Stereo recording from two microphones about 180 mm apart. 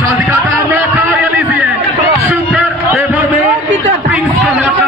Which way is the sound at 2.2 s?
Centre (ahead or behind).